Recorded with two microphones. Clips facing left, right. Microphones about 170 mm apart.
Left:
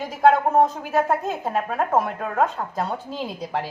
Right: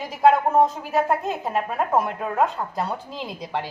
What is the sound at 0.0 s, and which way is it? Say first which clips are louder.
A woman's voice: even; centre (ahead or behind).